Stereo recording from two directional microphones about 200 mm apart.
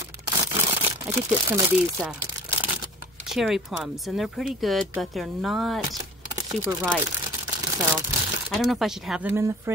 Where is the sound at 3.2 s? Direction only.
Centre (ahead or behind).